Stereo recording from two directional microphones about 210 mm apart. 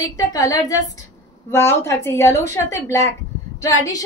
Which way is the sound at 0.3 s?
15° left (ahead or behind).